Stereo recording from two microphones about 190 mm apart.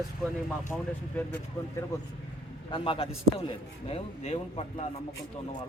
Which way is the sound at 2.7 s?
30° left (ahead or behind).